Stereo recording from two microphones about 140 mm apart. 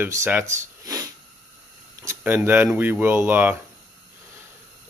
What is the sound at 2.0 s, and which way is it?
Speech, 15° right (ahead or behind).